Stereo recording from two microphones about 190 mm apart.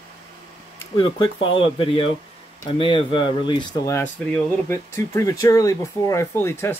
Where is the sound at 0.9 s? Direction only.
25° left (ahead or behind).